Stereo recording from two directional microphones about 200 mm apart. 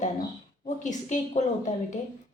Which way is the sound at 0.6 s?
40° left (ahead or behind).